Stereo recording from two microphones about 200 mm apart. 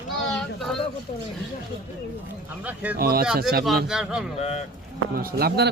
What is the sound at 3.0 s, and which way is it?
Speech, 50° right (ahead or behind).